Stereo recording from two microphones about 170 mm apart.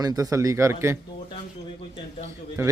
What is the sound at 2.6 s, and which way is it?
Speech, 15° right (ahead or behind).